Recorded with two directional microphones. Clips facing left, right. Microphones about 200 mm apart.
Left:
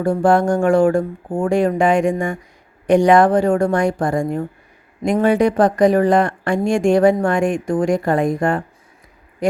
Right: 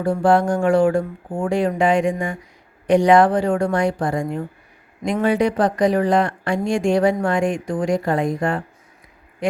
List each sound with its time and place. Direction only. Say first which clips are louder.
0.0 s speech: left 2 dB; 50° left (ahead or behind)